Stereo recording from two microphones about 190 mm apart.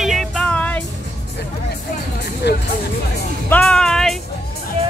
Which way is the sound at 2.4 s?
65° left (ahead or behind).